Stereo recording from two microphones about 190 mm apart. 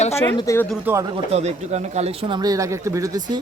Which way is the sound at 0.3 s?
15° left (ahead or behind).